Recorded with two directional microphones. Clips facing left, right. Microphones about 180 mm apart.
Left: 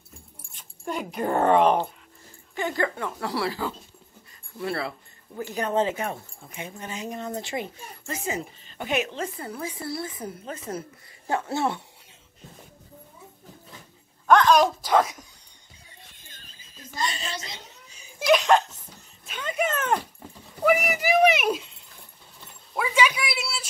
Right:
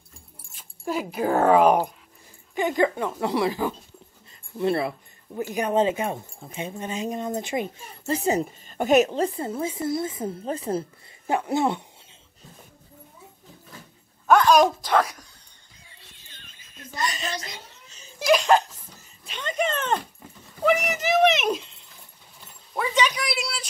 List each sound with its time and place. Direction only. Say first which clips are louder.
0.5 s speech: right 3 dB; 5° right (ahead or behind); by 7.7 s 20° right (ahead or behind)
8.0 s a woman's voice: right 8 dB; 35° right (ahead or behind)
9.4 s speech: right 6 dB; 25° right (ahead or behind)
11.2 s speech: right 3 dB; 15° right (ahead or behind)
14.2 s a sound: right 1 dB; 10° right (ahead or behind)
15.0 s speech: left 1 dB; 20° left (ahead or behind)
16.0 s a sound: left 1 dB; 45° left (ahead or behind); by 17.3 s 30° left (ahead or behind)
17.4 s speech: right 1 dB; 25° left (ahead or behind)
17.8 s laughter: right 1 dB; 15° left (ahead or behind)
18.2 s a woman's voice: even; centre (ahead or behind)